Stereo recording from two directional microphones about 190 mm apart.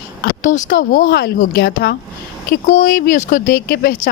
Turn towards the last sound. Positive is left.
turn(degrees=50)  # may be behind; listen again after turning